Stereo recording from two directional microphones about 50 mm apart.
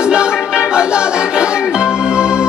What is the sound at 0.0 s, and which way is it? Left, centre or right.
Music, centre.